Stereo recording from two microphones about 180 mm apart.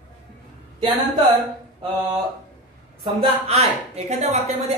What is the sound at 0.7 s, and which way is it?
Speech, 25° right (ahead or behind).